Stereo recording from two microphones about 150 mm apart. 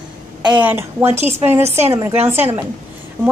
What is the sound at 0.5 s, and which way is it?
Speech, 10° right (ahead or behind).